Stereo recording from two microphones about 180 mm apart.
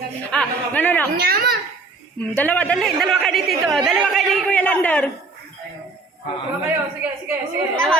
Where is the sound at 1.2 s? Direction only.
60° right (ahead or behind).